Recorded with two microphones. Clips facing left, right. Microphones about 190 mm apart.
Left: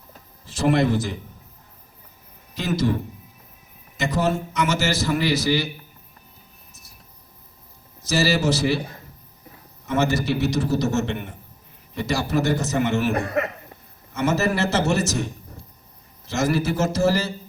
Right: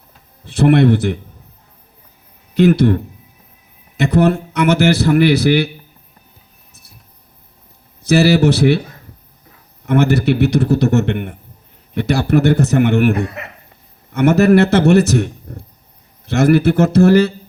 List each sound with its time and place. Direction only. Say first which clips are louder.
0.4 s a man's voice: right 8 dB; 60° right (ahead or behind)
2.6 s a man's voice: right 11 dB; 60° right (ahead or behind)
8.0 s a man's voice: right 9 dB; 60° right (ahead or behind)
9.8 s a man's voice: right 8 dB; 60° right (ahead or behind)